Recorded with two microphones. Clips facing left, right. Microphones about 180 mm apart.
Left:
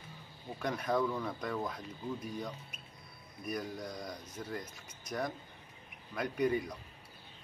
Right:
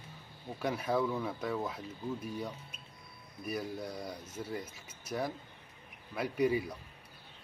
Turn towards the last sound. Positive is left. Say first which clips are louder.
# right 2 dB
turn(degrees=-5)  # may be behind; listen again after turning